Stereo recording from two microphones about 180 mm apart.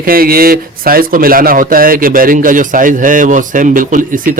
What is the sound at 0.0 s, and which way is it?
Speech, 55° right (ahead or behind).